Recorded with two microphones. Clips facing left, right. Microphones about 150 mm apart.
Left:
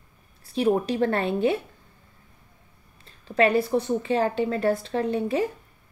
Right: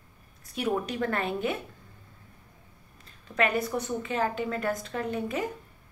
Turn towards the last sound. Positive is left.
turn(degrees=30)  # may be behind; listen again after turning